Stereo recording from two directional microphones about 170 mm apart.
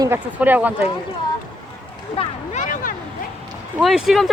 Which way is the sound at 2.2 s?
45° left (ahead or behind).